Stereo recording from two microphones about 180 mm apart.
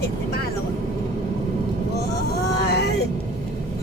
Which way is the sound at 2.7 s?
65° left (ahead or behind).